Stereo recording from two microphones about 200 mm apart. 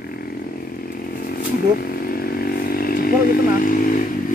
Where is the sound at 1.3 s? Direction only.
50° left (ahead or behind).